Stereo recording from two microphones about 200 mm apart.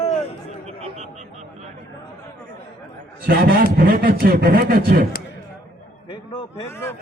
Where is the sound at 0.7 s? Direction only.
35° right (ahead or behind).